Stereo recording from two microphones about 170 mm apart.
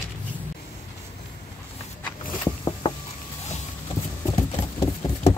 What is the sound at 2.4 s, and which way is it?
Boat, 25° left (ahead or behind).